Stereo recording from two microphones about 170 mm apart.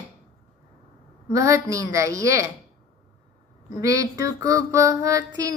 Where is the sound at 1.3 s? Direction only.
20° right (ahead or behind).